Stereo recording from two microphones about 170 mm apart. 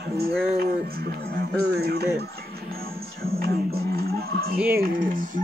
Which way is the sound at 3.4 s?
65° right (ahead or behind).